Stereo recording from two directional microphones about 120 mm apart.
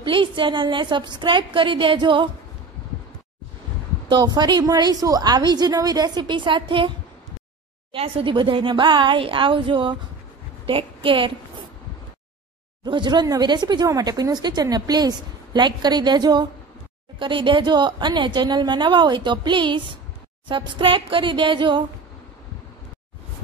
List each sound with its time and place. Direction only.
0.0 s a woman's voice: 45° right (ahead or behind)
4.1 s speech: 35° right (ahead or behind)
7.9 s a woman's voice: 50° right (ahead or behind)
12.8 s a woman's voice: 40° right (ahead or behind)